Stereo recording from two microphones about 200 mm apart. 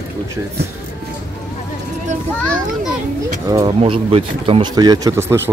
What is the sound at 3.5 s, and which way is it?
Speech, 25° right (ahead or behind).